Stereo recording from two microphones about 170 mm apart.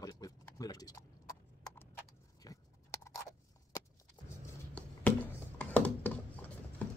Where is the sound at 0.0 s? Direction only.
20° left (ahead or behind).